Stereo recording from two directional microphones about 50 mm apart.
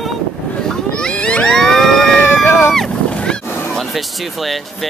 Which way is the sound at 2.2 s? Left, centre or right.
Left.